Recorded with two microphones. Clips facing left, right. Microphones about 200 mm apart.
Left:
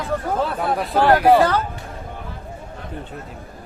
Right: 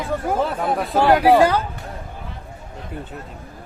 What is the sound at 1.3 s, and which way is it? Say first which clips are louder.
Speech: right 1 dB; 10° right (ahead or behind).